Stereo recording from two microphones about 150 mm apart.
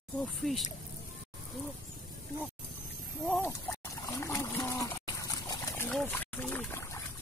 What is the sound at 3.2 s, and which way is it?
Speech, 10° left (ahead or behind).